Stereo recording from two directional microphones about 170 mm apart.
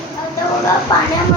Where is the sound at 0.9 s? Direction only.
25° left (ahead or behind).